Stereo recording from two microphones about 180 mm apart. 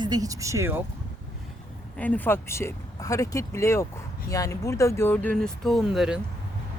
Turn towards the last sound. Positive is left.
turn(degrees=-5)  # may be behind; listen again after turning